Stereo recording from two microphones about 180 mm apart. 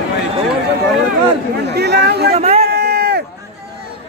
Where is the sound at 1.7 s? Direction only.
65° right (ahead or behind).